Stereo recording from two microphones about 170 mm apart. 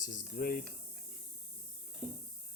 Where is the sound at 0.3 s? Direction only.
60° left (ahead or behind).